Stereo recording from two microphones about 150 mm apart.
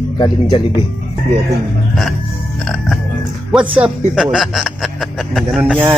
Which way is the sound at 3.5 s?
Centre (ahead or behind).